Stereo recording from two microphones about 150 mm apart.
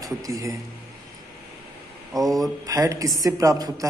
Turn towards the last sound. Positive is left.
turn(degrees=-25)  # may be behind; listen again after turning